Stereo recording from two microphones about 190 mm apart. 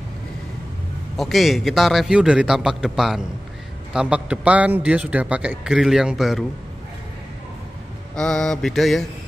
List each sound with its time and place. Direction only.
1.1 s a man's voice: centre (ahead or behind)
8.2 s a man's voice: 5° left (ahead or behind)